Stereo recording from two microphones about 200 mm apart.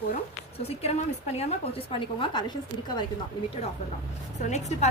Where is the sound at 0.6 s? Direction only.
30° left (ahead or behind).